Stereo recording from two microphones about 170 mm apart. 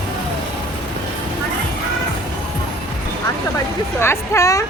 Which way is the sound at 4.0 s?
15° left (ahead or behind).